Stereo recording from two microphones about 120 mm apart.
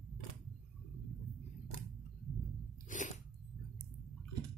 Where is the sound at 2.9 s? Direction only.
90° left.